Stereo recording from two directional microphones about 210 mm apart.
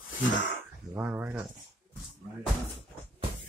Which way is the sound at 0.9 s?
5° right (ahead or behind).